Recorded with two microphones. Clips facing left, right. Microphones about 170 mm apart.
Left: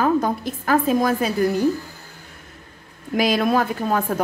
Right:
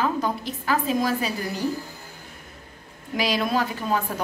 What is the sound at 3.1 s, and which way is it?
A woman's voice, 50° left (ahead or behind).